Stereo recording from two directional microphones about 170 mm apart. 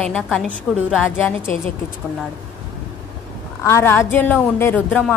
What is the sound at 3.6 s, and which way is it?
A woman's voice, 15° left (ahead or behind).